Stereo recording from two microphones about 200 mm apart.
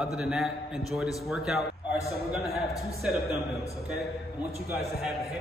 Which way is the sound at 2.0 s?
15° left (ahead or behind).